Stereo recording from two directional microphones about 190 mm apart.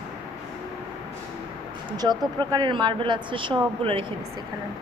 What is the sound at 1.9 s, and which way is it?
Speech, 20° right (ahead or behind).